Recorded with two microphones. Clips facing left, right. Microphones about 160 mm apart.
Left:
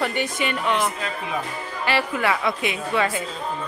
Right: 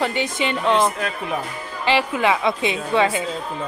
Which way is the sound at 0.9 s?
65° right (ahead or behind).